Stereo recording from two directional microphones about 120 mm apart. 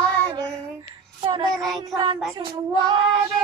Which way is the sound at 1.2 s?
40° right (ahead or behind).